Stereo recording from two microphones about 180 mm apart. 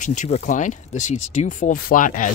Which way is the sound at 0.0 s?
45° left (ahead or behind).